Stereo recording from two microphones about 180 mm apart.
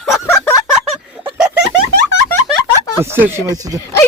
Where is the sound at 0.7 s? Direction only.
5° right (ahead or behind).